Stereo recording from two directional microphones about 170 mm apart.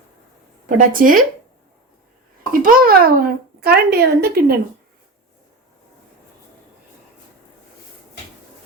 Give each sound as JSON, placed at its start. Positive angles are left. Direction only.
{"t": 0.8, "sound": "speech", "side_deg": -55}
{"t": 2.5, "sound": "a child's voice", "side_deg": -55}